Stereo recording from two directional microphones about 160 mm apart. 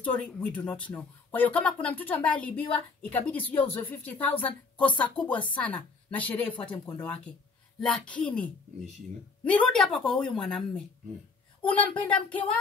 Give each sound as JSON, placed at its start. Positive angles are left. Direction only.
{"t": 0.0, "sound": "a woman's voice", "side_deg": 5}